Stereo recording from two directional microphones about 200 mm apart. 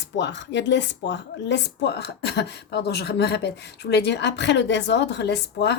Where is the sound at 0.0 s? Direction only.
65° left (ahead or behind).